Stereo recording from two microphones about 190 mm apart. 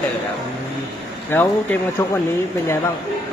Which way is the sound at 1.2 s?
10° left (ahead or behind).